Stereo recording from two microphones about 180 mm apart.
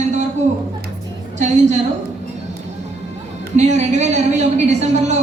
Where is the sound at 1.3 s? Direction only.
40° right (ahead or behind).